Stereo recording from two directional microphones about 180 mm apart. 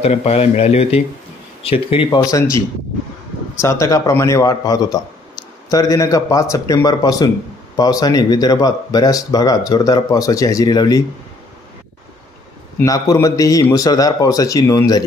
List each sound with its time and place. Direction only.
0.0 s speech: 35° left (ahead or behind); by 2.4 s 20° left (ahead or behind)
3.6 s speech: 15° left (ahead or behind)
12.8 s speech: 20° left (ahead or behind)